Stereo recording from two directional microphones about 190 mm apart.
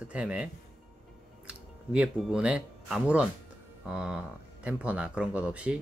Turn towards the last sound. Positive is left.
turn(degrees=-5)  # may be behind; listen again after turning